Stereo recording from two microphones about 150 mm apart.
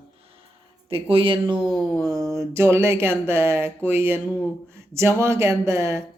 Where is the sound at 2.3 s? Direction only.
20° right (ahead or behind).